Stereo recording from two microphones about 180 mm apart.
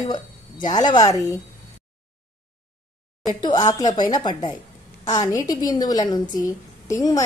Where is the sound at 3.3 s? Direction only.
20° left (ahead or behind).